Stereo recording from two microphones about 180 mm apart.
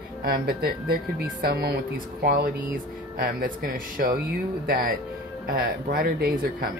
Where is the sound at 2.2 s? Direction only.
55° right (ahead or behind).